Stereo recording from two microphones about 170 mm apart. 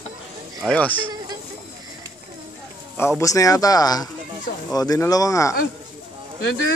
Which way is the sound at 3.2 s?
20° left (ahead or behind).